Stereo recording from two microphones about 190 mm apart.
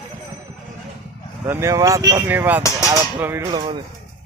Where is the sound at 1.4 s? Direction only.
15° right (ahead or behind).